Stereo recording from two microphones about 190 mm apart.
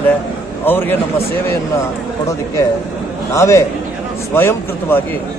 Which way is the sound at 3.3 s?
15° left (ahead or behind).